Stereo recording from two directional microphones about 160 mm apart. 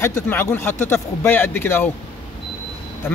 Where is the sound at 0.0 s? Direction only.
15° left (ahead or behind).